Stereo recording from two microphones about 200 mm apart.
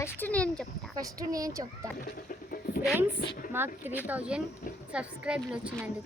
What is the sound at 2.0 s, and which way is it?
Chicken, 45° left (ahead or behind).